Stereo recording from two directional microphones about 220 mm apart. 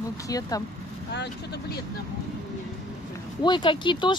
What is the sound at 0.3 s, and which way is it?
Speech, 15° left (ahead or behind).